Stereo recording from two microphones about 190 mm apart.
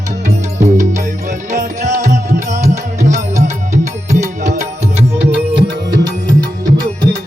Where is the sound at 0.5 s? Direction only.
40° right (ahead or behind).